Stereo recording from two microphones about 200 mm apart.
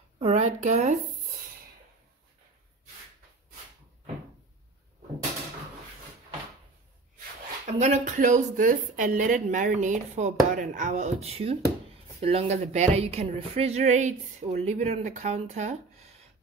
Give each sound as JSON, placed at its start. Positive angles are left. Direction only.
{"t": 0.2, "sound": "speech", "side_deg": -35}
{"t": 7.6, "sound": "a woman's voice", "side_deg": -35}